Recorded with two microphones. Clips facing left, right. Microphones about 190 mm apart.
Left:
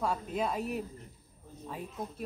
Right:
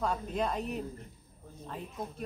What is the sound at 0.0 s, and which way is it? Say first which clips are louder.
Speech: even; 5° left (ahead or behind).